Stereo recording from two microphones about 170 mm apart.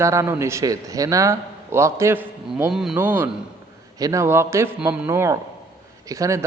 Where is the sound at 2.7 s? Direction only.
Centre (ahead or behind).